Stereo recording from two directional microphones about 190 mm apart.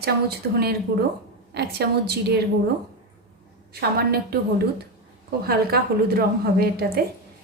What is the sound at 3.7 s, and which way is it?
A woman's voice, 55° right (ahead or behind).